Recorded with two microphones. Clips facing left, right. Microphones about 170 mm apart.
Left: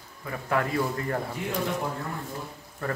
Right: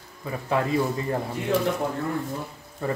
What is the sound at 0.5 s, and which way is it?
Speech, 20° right (ahead or behind).